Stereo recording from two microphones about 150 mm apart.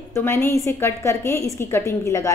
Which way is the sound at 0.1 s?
15° left (ahead or behind).